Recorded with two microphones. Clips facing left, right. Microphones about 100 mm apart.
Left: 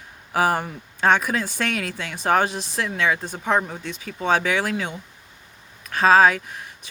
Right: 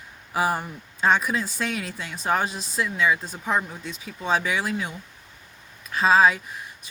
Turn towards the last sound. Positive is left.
turn(degrees=55)  # may be behind; listen again after turning